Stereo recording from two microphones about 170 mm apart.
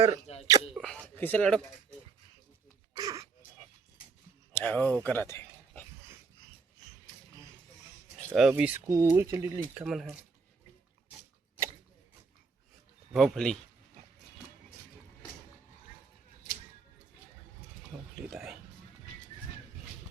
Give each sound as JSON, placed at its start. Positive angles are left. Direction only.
{"t": 0.3, "sound": "sneeze", "side_deg": 40}
{"t": 0.7, "sound": "speech", "side_deg": 5}
{"t": 3.0, "sound": "a sound", "side_deg": -20}
{"t": 4.5, "sound": "speech", "side_deg": 10}
{"t": 5.0, "sound": "a sound", "side_deg": 15}
{"t": 8.3, "sound": "speech", "side_deg": -5}
{"t": 8.9, "sound": "speech", "side_deg": -20}
{"t": 9.8, "sound": "speech", "side_deg": 0}
{"t": 11.1, "sound": "a sound", "side_deg": -10}
{"t": 13.1, "sound": "speech", "side_deg": 0}
{"t": 18.3, "sound": "speech", "side_deg": 0}